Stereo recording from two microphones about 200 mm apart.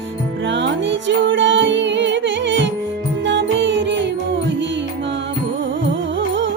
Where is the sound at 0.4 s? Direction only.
65° right (ahead or behind).